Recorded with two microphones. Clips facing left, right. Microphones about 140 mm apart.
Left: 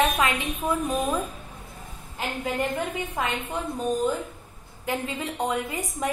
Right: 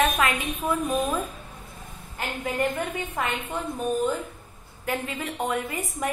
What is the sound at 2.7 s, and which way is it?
Speech, 10° left (ahead or behind).